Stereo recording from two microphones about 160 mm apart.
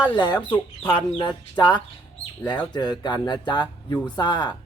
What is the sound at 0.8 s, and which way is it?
Speech, 30° left (ahead or behind).